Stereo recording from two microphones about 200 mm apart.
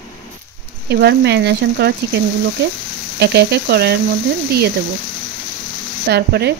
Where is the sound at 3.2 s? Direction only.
55° right (ahead or behind).